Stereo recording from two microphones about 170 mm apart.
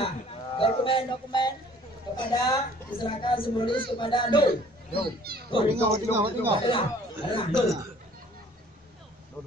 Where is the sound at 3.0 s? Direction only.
30° left (ahead or behind).